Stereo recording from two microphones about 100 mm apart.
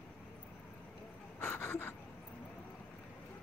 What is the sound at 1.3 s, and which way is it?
Gasp, 20° left (ahead or behind).